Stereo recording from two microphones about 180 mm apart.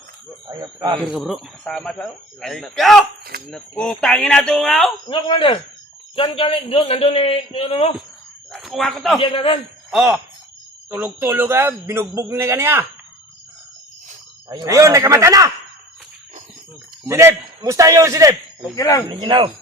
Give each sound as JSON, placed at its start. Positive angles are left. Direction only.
{"t": 0.4, "sound": "speech", "side_deg": -25}
{"t": 1.0, "sound": "speech", "side_deg": 0}
{"t": 5.0, "sound": "a man's voice", "side_deg": 25}
{"t": 8.5, "sound": "a man's voice", "side_deg": 0}
{"t": 9.2, "sound": "speech", "side_deg": 30}
{"t": 9.9, "sound": "a man's voice", "side_deg": -5}
{"t": 14.5, "sound": "a man's voice", "side_deg": -20}
{"t": 17.1, "sound": "a man's voice", "side_deg": -15}
{"t": 18.8, "sound": "speech", "side_deg": 20}
{"t": 19.0, "sound": "a man's voice", "side_deg": -30}